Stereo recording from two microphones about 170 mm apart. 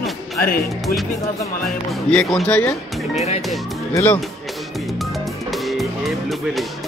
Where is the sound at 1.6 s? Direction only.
5° left (ahead or behind).